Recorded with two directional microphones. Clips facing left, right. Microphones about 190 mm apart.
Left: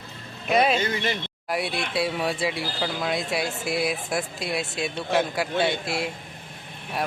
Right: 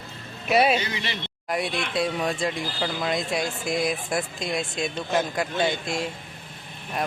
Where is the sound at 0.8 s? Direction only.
50° left (ahead or behind).